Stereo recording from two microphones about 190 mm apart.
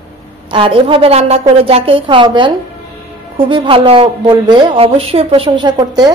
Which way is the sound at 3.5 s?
30° right (ahead or behind).